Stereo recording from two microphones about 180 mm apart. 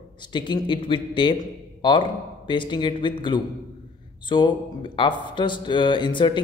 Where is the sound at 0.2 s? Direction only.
25° left (ahead or behind).